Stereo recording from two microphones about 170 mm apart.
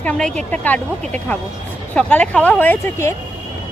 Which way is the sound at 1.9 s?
10° left (ahead or behind).